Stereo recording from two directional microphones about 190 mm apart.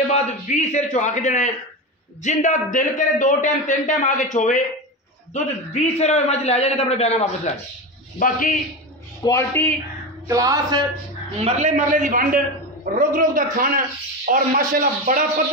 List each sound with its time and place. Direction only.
0.1 s a man's voice: 35° left (ahead or behind)
8.2 s a man's voice: 45° left (ahead or behind)
9.2 s a man's voice: 15° left (ahead or behind)
10.2 s speech: 20° right (ahead or behind)
11.3 s a man's voice: 35° right (ahead or behind)